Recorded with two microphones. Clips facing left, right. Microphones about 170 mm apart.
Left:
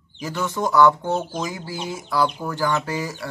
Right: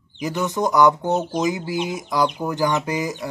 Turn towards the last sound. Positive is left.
turn(degrees=-15)  # may be behind; listen again after turning